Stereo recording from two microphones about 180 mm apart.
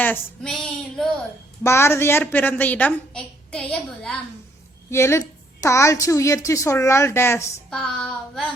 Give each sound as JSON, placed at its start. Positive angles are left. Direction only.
{"t": 0.0, "sound": "female singing", "side_deg": 5}
{"t": 1.6, "sound": "a woman's voice", "side_deg": 15}
{"t": 4.9, "sound": "a woman's voice", "side_deg": 15}
{"t": 7.7, "sound": "child singing", "side_deg": 5}